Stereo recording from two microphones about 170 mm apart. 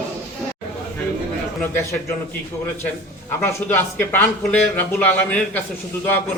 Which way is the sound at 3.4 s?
15° left (ahead or behind).